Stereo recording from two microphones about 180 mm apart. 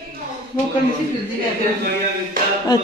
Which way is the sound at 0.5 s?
15° left (ahead or behind).